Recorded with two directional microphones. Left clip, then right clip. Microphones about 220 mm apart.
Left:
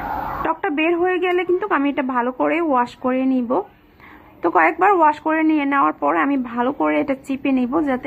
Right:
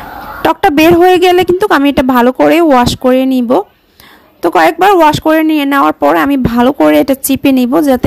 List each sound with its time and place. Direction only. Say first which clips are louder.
0.4 s speech: right 14 dB; 50° right (ahead or behind)